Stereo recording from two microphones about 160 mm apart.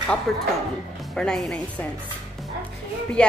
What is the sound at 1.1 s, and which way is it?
Speech, 5° left (ahead or behind).